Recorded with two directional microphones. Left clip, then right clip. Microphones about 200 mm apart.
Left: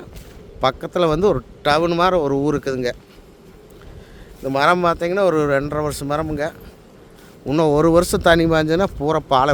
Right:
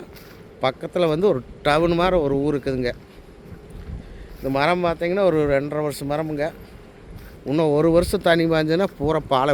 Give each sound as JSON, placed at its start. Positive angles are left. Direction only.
{"t": 0.6, "sound": "speech", "side_deg": 10}
{"t": 4.4, "sound": "speech", "side_deg": 15}
{"t": 7.4, "sound": "speech", "side_deg": 15}